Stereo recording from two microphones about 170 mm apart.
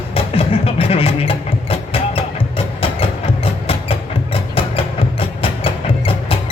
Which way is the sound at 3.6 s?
35° left (ahead or behind).